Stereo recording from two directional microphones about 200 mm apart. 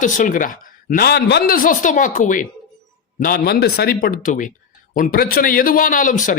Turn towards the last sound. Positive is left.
turn(degrees=40)  # may be behind; listen again after turning